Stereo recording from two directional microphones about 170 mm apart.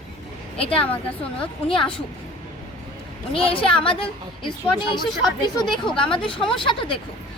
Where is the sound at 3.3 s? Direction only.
30° left (ahead or behind).